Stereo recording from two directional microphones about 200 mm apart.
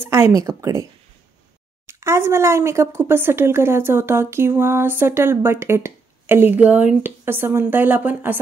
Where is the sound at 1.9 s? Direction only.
15° right (ahead or behind).